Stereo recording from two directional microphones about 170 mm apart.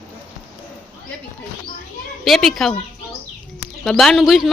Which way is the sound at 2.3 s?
Centre (ahead or behind).